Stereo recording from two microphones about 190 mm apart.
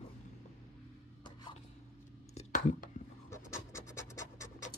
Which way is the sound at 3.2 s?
15° left (ahead or behind).